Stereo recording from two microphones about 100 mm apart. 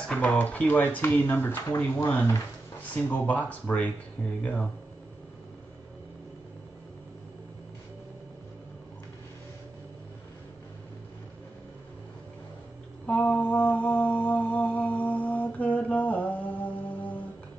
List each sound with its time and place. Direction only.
0.1 s speech: 10° left (ahead or behind)
13.0 s mantra: 15° left (ahead or behind)